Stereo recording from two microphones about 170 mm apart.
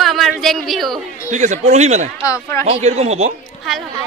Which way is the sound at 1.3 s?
45° right (ahead or behind).